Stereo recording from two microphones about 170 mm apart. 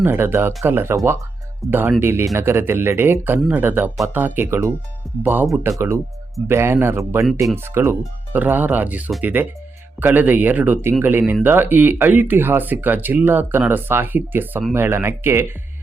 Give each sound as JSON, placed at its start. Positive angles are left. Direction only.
{"t": 0.0, "sound": "speech", "side_deg": -15}